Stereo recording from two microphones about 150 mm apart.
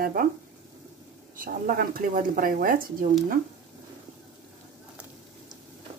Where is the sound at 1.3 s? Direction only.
65° right (ahead or behind).